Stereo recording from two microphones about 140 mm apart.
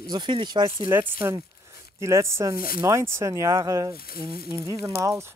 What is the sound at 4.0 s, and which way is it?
Speech, 90° left.